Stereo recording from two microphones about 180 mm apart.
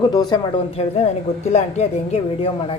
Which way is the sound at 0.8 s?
35° left (ahead or behind).